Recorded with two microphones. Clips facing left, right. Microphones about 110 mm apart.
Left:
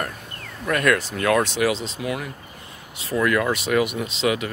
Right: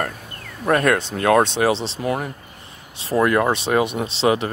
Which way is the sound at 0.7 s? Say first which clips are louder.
Right 3 dB; 30° right (ahead or behind).